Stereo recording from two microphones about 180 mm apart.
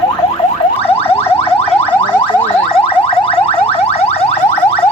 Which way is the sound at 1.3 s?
35° left (ahead or behind).